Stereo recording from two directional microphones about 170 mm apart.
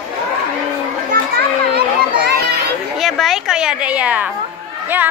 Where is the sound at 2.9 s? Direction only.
Centre (ahead or behind).